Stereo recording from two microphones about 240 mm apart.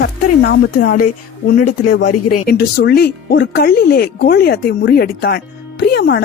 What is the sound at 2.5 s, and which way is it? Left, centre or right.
Speech, left.